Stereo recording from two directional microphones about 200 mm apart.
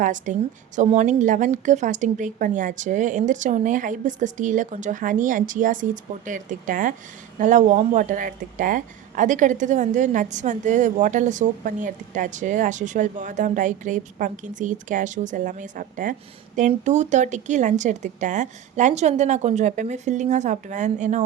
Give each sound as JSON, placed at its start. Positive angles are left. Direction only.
{"t": 0.0, "sound": "a woman's voice", "side_deg": -40}